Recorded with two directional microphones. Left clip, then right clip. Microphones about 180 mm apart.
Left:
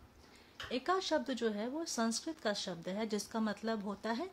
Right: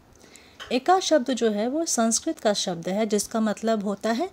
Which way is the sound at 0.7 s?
25° right (ahead or behind).